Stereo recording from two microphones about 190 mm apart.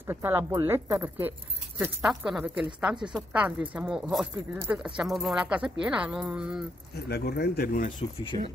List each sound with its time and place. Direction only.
0.0 s speech: 10° right (ahead or behind)
7.1 s speech: 55° left (ahead or behind)
8.3 s speech: 25° left (ahead or behind)